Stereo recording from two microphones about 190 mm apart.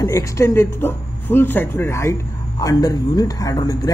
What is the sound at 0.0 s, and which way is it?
A man's voice, 15° left (ahead or behind).